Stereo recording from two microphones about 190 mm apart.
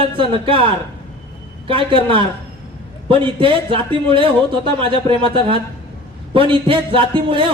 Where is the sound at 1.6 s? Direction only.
25° right (ahead or behind).